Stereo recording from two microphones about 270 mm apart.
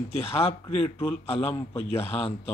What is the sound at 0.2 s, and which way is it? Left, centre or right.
Speech, left.